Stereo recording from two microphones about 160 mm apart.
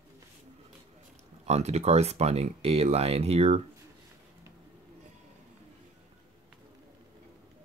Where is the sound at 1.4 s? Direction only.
45° right (ahead or behind).